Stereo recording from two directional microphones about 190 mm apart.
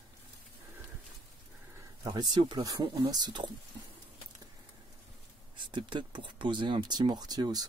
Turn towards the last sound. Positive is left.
turn(degrees=-20)  # may be behind; listen again after turning